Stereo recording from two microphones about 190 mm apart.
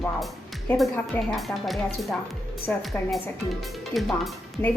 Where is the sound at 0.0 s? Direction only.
Centre (ahead or behind).